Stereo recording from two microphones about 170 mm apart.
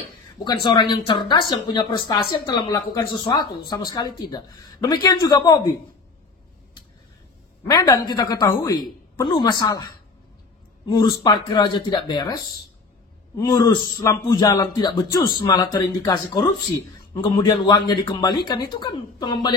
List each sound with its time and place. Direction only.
0.4 s speech: 25° left (ahead or behind)
7.6 s speech: 20° left (ahead or behind)
13.4 s speech: 20° left (ahead or behind)